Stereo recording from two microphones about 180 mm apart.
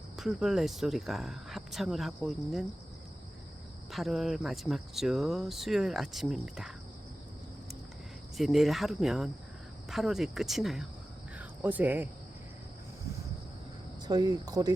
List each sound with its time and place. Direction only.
0.2 s speech: centre (ahead or behind)
3.9 s speech: centre (ahead or behind)
8.4 s speech: centre (ahead or behind)
14.1 s speech: 20° right (ahead or behind)